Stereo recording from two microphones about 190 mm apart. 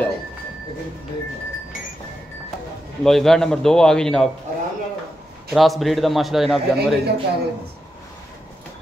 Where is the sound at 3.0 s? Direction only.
Centre (ahead or behind).